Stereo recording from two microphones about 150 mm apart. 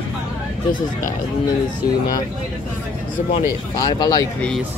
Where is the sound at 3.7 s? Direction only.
25° left (ahead or behind).